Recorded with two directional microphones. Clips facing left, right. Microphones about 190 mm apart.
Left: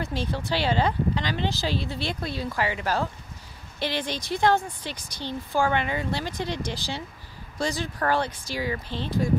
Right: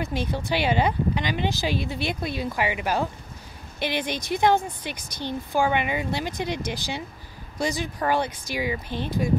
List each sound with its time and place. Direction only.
0.0 s speech: 15° right (ahead or behind)